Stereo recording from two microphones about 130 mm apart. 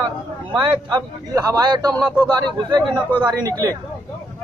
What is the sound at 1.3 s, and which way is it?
A man's voice, 30° right (ahead or behind).